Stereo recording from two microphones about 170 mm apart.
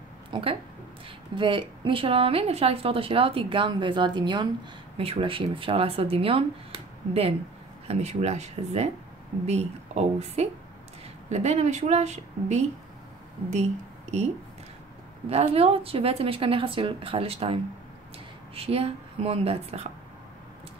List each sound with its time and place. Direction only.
0.3 s a woman's voice: 35° right (ahead or behind)
15.2 s a woman's voice: 35° right (ahead or behind)